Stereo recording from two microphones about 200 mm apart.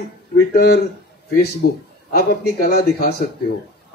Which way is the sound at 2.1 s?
50° left (ahead or behind).